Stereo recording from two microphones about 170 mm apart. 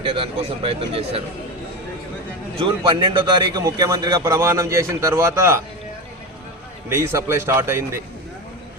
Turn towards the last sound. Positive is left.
turn(degrees=-15)  # may be behind; listen again after turning